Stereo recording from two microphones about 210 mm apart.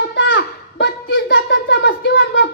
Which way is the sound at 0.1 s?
60° left (ahead or behind).